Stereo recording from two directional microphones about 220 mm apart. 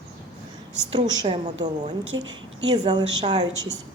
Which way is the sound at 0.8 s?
20° right (ahead or behind).